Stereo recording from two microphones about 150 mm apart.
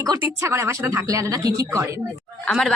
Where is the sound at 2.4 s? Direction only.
Centre (ahead or behind).